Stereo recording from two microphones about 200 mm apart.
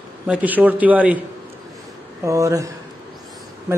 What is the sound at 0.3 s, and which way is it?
Speech, 5° right (ahead or behind).